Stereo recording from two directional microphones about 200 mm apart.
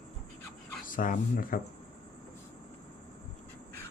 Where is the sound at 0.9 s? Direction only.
40° left (ahead or behind).